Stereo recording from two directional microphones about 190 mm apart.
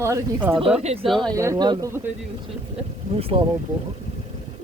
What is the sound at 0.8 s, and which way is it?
Speech, 35° right (ahead or behind).